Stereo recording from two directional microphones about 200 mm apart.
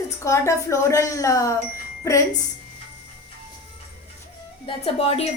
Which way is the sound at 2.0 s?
15° left (ahead or behind).